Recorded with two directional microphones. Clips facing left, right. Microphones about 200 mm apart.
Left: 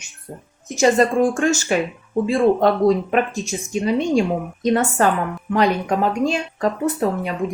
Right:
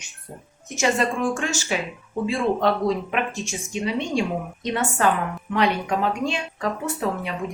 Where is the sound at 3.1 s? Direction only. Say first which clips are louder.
Left 6 dB; 40° left (ahead or behind).